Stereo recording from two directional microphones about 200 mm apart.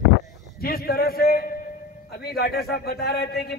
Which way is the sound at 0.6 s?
50° left (ahead or behind).